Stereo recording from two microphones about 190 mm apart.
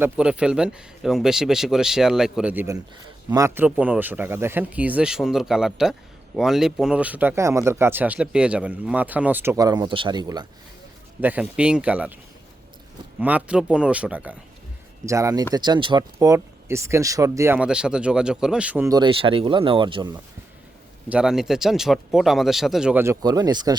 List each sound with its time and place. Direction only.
0.0 s speech: 5° right (ahead or behind); by 10.4 s 20° right (ahead or behind)
11.2 s speech: 5° right (ahead or behind)
13.1 s speech: 5° right (ahead or behind)
18.9 s speech: 20° right (ahead or behind)
21.1 s speech: 5° right (ahead or behind); by 23.7 s 20° right (ahead or behind)